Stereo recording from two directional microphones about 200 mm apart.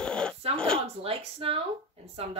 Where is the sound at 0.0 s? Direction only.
5° left (ahead or behind).